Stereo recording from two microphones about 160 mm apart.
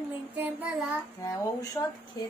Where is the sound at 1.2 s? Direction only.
20° left (ahead or behind).